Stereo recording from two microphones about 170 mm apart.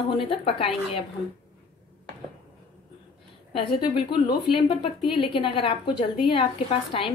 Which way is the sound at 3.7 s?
30° left (ahead or behind).